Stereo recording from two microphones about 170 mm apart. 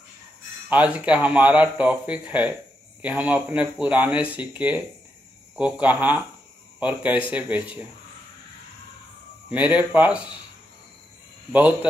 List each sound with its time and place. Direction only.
0.7 s speech: 10° right (ahead or behind)
9.5 s speech: 10° right (ahead or behind)
11.5 s speech: 10° right (ahead or behind)